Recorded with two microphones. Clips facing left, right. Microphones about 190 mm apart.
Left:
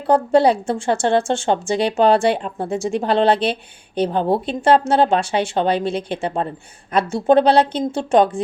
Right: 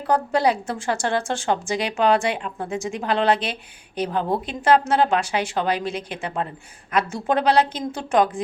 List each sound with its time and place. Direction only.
0.1 s a woman's voice: 30° left (ahead or behind)